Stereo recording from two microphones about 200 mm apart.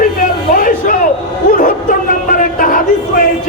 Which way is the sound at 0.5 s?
45° left (ahead or behind).